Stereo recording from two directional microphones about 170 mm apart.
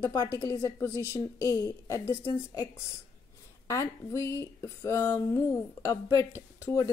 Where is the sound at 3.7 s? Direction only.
15° left (ahead or behind).